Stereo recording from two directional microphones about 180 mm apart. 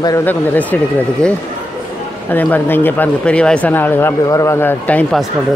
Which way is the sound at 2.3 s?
10° left (ahead or behind).